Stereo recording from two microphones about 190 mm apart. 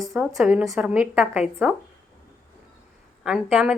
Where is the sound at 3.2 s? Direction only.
5° right (ahead or behind).